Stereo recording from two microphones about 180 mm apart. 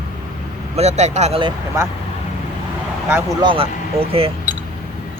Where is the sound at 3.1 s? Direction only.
15° right (ahead or behind).